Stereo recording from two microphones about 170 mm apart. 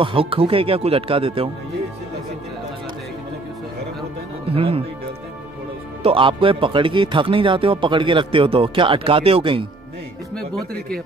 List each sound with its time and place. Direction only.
0.0 s speech: 30° right (ahead or behind)
4.6 s speech: 35° right (ahead or behind)
6.0 s speech: 30° right (ahead or behind)